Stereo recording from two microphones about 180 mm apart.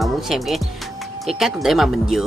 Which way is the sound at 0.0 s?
Centre (ahead or behind).